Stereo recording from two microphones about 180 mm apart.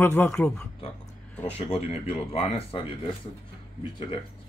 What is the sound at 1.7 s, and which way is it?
Speech, 35° left (ahead or behind).